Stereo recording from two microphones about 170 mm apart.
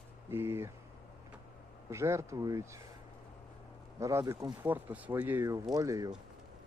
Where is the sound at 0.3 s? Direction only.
15° right (ahead or behind).